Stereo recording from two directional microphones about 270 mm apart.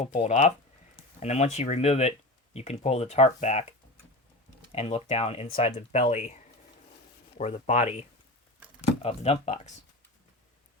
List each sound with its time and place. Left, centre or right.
0.0 s speech: left